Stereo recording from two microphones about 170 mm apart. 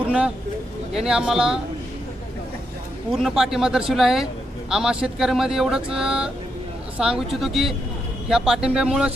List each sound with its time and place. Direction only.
0.9 s speech: 5° right (ahead or behind)
3.1 s speech: centre (ahead or behind)